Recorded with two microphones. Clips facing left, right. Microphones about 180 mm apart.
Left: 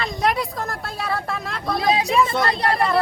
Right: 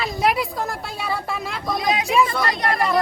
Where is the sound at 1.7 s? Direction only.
30° left (ahead or behind).